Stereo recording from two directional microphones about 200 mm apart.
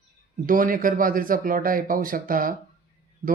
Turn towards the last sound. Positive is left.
turn(degrees=-25)  # may be behind; listen again after turning